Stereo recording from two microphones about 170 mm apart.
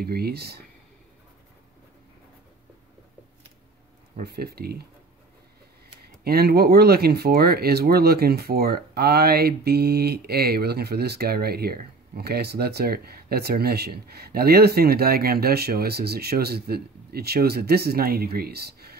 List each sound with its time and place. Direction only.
0.0 s speech: 65° right (ahead or behind)
4.2 s speech: 65° right (ahead or behind)
6.2 s speech: 65° right (ahead or behind)